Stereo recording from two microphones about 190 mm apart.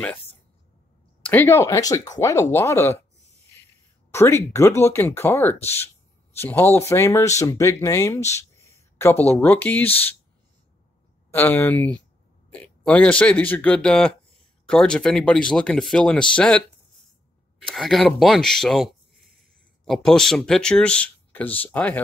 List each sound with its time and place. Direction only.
1.2 s speech: 10° left (ahead or behind)
4.1 s speech: 15° left (ahead or behind)
11.3 s speech: 10° left (ahead or behind)